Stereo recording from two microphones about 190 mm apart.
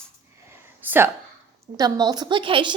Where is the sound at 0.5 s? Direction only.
10° right (ahead or behind).